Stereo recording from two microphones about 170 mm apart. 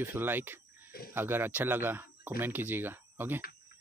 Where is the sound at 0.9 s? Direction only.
65° left (ahead or behind).